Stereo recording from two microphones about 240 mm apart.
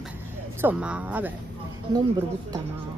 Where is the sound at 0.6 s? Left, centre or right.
Centre.